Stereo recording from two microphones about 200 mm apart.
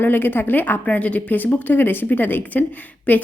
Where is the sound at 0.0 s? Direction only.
10° left (ahead or behind).